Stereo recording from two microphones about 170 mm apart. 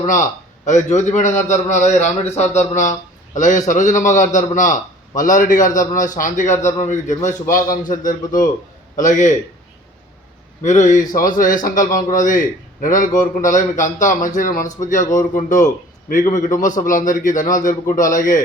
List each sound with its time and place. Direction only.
0.6 s a man's voice: 45° left (ahead or behind)
10.6 s a man's voice: 45° left (ahead or behind)